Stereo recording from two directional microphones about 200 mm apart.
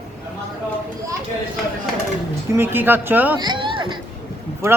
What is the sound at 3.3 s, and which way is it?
Speech, 25° right (ahead or behind).